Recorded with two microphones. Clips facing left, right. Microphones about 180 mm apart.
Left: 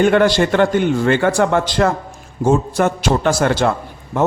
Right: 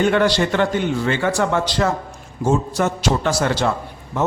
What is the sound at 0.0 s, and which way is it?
A man's voice, 50° left (ahead or behind).